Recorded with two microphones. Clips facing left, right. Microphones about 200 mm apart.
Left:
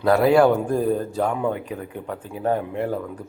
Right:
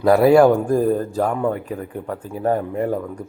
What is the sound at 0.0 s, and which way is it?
A man's voice, centre (ahead or behind).